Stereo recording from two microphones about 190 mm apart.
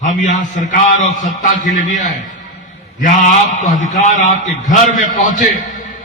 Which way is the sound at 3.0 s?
40° left (ahead or behind).